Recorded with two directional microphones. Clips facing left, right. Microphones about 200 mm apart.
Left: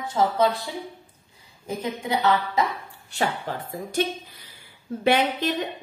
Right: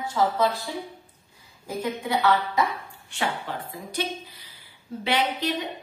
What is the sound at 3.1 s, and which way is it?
Speech, 40° left (ahead or behind).